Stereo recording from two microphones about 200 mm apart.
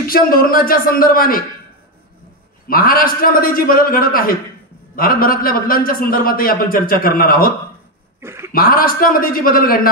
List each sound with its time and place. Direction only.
0.1 s a man's voice: 45° left (ahead or behind)
2.7 s a man's voice: 45° left (ahead or behind)
8.2 s a sound: 15° right (ahead or behind)
8.5 s a man's voice: 45° left (ahead or behind)